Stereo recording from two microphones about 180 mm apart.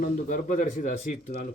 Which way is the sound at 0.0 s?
45° left (ahead or behind).